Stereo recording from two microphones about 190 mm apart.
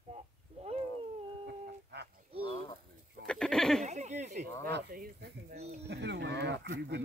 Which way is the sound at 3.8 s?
40° right (ahead or behind).